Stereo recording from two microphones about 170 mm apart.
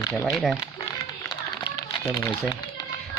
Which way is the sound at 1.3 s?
25° left (ahead or behind).